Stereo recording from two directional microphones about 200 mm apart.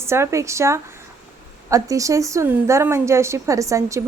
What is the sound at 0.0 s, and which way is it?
A woman's voice, 15° right (ahead or behind).